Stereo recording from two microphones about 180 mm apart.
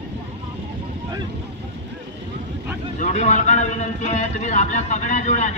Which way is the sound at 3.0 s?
40° left (ahead or behind).